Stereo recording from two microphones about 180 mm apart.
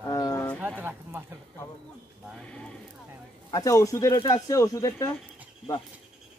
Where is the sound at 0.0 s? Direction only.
15° left (ahead or behind).